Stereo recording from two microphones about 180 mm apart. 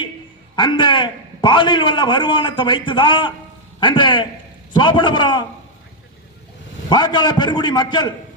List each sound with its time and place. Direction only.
0.5 s a man's voice: 25° left (ahead or behind)
6.9 s a man's voice: 25° left (ahead or behind)